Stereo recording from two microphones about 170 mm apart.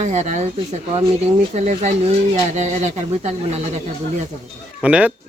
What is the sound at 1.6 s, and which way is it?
Speech, 45° right (ahead or behind).